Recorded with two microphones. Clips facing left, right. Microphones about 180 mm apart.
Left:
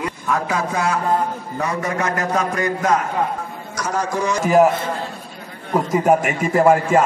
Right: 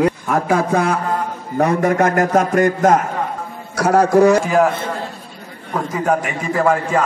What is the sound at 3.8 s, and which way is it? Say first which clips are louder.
Speech: right 11 dB; 60° right (ahead or behind).